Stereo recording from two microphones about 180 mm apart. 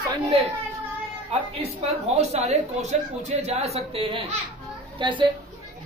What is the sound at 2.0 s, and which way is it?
A woman's voice, 35° right (ahead or behind).